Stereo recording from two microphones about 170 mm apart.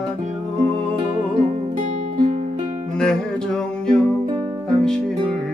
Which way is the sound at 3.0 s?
5° left (ahead or behind).